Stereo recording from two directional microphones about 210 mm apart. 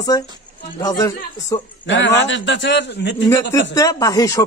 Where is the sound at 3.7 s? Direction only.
15° left (ahead or behind).